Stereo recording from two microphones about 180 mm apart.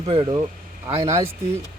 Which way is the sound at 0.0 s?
30° right (ahead or behind).